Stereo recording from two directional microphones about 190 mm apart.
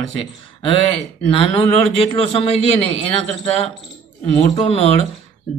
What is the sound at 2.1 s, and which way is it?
Speech, 30° left (ahead or behind).